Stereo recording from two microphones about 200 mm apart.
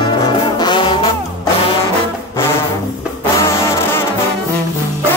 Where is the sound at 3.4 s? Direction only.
15° left (ahead or behind).